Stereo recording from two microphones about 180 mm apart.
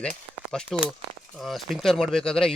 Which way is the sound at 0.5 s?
Centre (ahead or behind).